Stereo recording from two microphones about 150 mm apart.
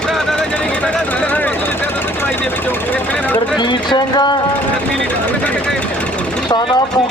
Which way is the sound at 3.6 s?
30° left (ahead or behind).